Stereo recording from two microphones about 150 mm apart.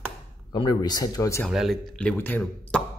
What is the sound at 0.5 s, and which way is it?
Speech, 25° left (ahead or behind).